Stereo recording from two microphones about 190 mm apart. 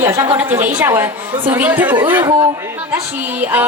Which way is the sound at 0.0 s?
15° right (ahead or behind).